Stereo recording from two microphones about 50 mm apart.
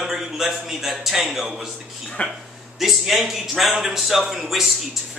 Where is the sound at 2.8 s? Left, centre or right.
Centre.